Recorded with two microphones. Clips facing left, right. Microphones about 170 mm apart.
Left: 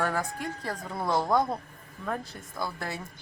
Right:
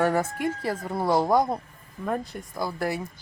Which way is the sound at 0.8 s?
20° right (ahead or behind).